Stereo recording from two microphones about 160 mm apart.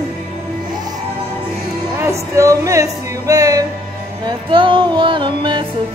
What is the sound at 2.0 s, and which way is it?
Music, 20° right (ahead or behind).